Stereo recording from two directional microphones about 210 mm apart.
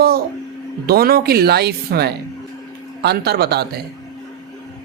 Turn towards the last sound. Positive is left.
turn(degrees=-50)  # may be behind; listen again after turning